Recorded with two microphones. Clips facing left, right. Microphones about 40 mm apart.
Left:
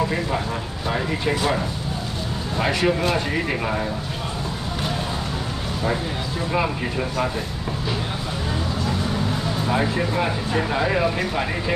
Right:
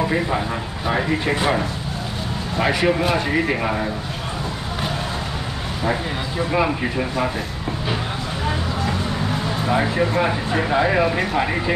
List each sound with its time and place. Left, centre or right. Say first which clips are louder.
0.0 s speech: right 2 dB; centre
2.6 s speech: right 2 dB; centre
6.5 s speech: right 3 dB; centre
9.7 s speech: right 3 dB; centre